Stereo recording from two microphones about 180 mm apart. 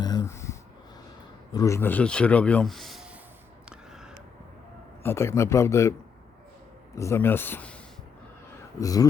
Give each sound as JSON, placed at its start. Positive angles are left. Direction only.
{"t": 0.0, "sound": "a sound", "side_deg": 20}
{"t": 1.5, "sound": "a man's voice", "side_deg": 15}
{"t": 3.7, "sound": "a sound", "side_deg": -5}
{"t": 5.0, "sound": "a man's voice", "side_deg": 15}
{"t": 6.9, "sound": "a man's voice", "side_deg": 15}
{"t": 8.8, "sound": "speech", "side_deg": 20}